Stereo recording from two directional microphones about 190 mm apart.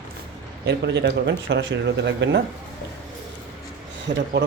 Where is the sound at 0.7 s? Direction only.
65° right (ahead or behind).